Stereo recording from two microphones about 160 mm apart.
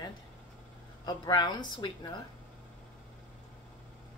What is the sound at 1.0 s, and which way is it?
A woman's voice, 25° left (ahead or behind).